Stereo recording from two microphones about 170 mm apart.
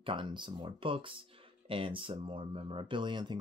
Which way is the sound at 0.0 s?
30° right (ahead or behind).